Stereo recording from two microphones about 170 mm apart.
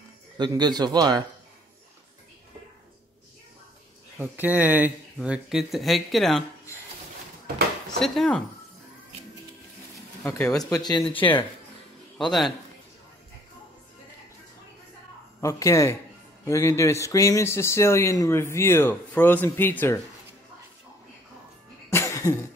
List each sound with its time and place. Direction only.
0.4 s a man's voice: 25° right (ahead or behind)
4.2 s speech: 10° right (ahead or behind)
8.0 s speech: centre (ahead or behind)
10.2 s speech: 5° left (ahead or behind)
10.6 s speech: 25° left (ahead or behind)
12.2 s speech: centre (ahead or behind)
15.4 s speech: 15° left (ahead or behind)
21.9 s cough: 20° left (ahead or behind)